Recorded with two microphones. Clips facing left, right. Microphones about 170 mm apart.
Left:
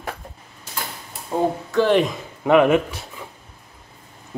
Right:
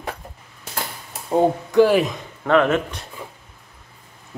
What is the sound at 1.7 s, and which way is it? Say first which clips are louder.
Speech: right 2 dB; 10° right (ahead or behind).